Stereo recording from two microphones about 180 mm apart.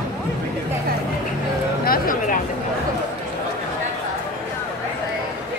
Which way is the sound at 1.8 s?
55° left (ahead or behind).